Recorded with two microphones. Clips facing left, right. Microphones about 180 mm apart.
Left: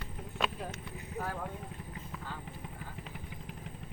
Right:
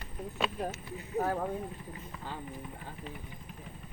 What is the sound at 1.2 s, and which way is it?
Speech, 45° right (ahead or behind).